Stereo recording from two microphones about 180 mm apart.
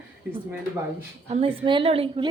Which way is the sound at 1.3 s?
30° right (ahead or behind).